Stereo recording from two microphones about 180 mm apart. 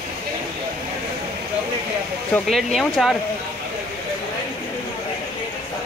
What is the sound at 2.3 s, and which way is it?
Speech, centre (ahead or behind).